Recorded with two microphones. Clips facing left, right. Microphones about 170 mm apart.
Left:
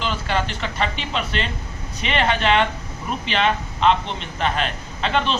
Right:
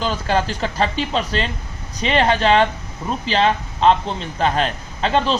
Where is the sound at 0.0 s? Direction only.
40° right (ahead or behind).